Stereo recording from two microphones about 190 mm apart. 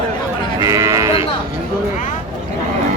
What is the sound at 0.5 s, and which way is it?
Sheep, 20° right (ahead or behind).